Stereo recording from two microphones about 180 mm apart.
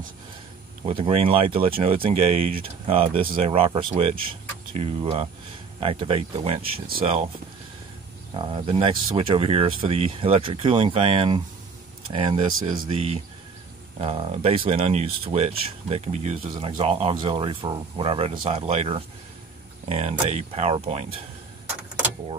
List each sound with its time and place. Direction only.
0.8 s speech: 30° right (ahead or behind)
8.4 s speech: 25° right (ahead or behind)
16.4 s speech: 30° right (ahead or behind)